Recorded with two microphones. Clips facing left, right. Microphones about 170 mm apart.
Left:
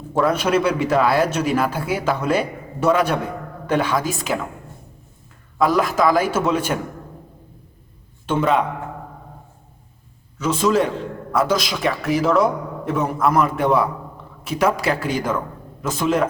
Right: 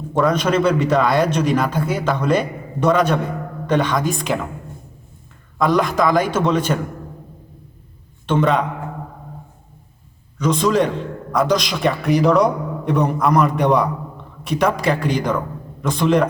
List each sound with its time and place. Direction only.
0.1 s a man's voice: 10° left (ahead or behind)
5.5 s a man's voice: 5° left (ahead or behind)
8.3 s a man's voice: 5° left (ahead or behind)
10.3 s a man's voice: 5° left (ahead or behind)